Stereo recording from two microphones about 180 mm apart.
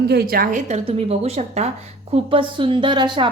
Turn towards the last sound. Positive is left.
turn(degrees=-25)  # may be behind; listen again after turning